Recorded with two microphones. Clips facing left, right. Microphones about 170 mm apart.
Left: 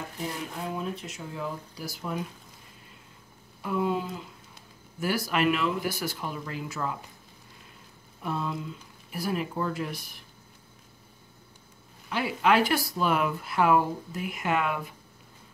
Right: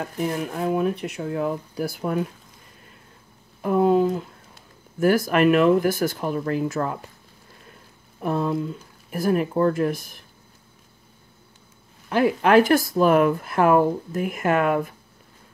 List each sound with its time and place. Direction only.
0.2 s speech: 55° right (ahead or behind)
3.6 s a sound: 50° right (ahead or behind)
5.0 s speech: 50° right (ahead or behind)
8.2 s speech: 50° right (ahead or behind)
12.1 s speech: 50° right (ahead or behind)